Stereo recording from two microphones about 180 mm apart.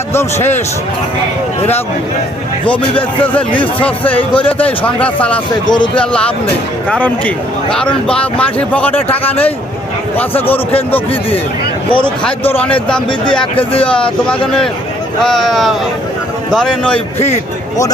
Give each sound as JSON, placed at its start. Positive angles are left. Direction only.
{"t": 0.1, "sound": "a man's voice", "side_deg": 15}
{"t": 3.8, "sound": "a man's voice", "side_deg": 10}
{"t": 12.0, "sound": "a man's voice", "side_deg": 10}
{"t": 17.2, "sound": "a man's voice", "side_deg": 35}